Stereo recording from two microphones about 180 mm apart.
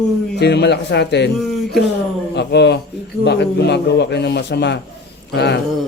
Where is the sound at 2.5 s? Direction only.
70° left (ahead or behind).